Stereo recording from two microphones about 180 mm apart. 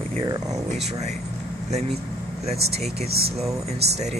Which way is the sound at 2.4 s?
35° right (ahead or behind).